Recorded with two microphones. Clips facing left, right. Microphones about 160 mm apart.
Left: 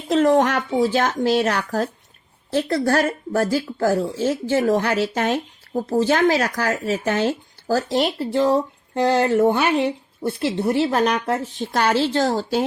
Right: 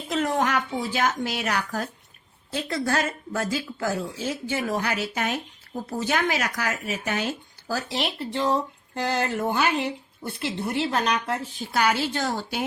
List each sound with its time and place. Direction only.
0.1 s speech: 40° left (ahead or behind)